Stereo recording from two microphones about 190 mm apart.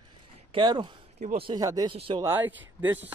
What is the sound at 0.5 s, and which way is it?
Speech, 25° right (ahead or behind).